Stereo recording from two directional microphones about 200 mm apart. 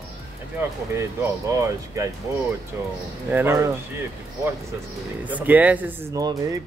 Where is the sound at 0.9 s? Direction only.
15° right (ahead or behind).